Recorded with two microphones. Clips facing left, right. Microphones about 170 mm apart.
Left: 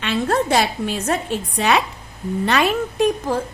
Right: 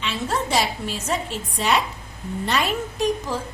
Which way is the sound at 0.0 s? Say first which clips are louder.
Left 6 dB; 60° left (ahead or behind).